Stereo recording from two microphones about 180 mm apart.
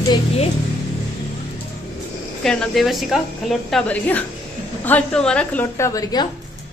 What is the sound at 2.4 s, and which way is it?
A woman's voice, 5° left (ahead or behind).